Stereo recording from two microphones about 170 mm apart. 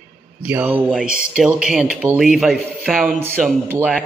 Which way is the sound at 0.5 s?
10° right (ahead or behind).